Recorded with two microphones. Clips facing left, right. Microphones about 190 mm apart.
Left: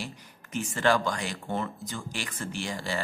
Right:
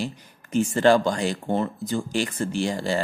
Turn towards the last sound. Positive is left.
turn(degrees=-30)  # may be behind; listen again after turning